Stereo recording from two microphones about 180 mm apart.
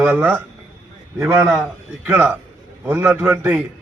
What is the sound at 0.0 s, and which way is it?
Speech, 10° right (ahead or behind).